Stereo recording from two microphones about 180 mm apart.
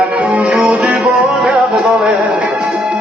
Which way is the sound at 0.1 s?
5° right (ahead or behind).